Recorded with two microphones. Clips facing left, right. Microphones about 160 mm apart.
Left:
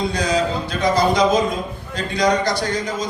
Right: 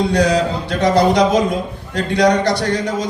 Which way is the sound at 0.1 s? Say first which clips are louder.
Right 5 dB; 70° right (ahead or behind).